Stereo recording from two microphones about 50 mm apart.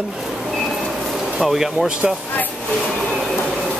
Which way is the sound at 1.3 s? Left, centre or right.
Centre.